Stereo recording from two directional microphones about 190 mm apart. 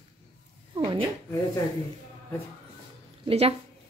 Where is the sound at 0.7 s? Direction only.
30° right (ahead or behind).